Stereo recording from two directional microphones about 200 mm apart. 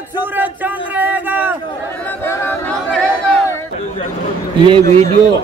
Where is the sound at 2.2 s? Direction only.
10° left (ahead or behind).